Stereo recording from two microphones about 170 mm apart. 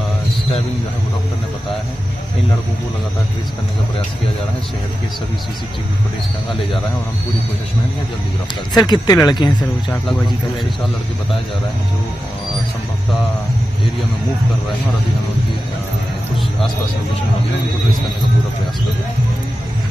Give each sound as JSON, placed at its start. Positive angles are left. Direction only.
{"t": 8.7, "sound": "speech", "side_deg": 25}
{"t": 9.8, "sound": "speech", "side_deg": 0}